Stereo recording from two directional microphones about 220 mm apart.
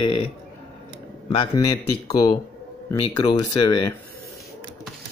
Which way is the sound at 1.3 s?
20° left (ahead or behind).